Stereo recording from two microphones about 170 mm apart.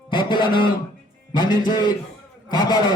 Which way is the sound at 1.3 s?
25° left (ahead or behind).